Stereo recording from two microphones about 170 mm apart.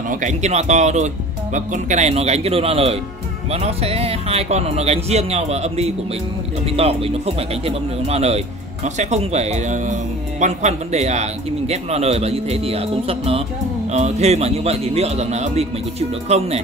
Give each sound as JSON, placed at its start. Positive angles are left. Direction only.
{"t": 0.1, "sound": "a man's voice", "side_deg": -45}